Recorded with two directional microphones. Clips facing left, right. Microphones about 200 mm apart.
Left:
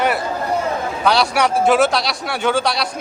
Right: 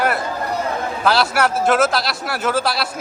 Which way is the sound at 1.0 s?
5° right (ahead or behind).